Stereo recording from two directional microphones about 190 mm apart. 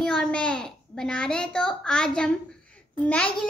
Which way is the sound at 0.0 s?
5° left (ahead or behind).